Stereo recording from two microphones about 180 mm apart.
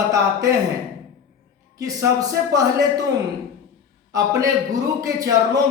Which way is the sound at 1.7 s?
20° right (ahead or behind).